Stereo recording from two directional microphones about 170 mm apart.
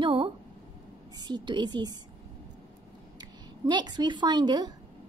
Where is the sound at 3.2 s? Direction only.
25° right (ahead or behind).